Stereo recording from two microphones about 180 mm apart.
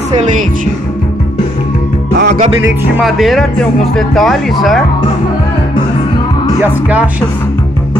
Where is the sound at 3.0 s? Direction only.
Centre (ahead or behind).